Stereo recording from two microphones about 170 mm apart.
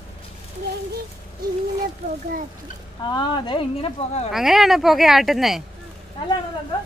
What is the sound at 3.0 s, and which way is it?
Speech, 25° left (ahead or behind).